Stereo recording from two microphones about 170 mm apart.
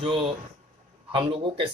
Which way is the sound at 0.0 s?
30° right (ahead or behind).